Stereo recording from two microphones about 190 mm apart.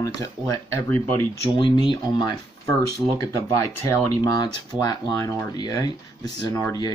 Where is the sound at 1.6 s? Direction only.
25° left (ahead or behind).